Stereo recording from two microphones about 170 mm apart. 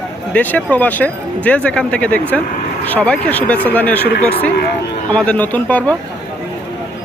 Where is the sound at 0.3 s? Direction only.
10° left (ahead or behind).